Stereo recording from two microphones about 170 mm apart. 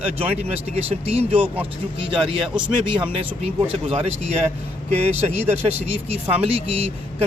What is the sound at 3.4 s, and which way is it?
Speech, 35° right (ahead or behind).